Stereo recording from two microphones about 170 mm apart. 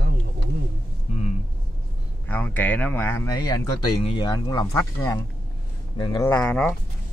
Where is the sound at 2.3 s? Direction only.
10° left (ahead or behind).